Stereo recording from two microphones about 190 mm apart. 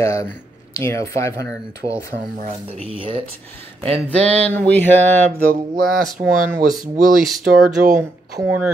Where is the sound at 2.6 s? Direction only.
30° right (ahead or behind).